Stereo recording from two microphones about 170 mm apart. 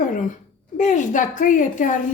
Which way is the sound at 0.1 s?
50° left (ahead or behind).